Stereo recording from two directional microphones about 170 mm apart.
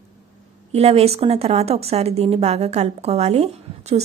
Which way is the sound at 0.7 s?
35° right (ahead or behind).